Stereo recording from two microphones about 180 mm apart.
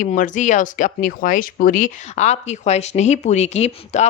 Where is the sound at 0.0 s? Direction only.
45° left (ahead or behind).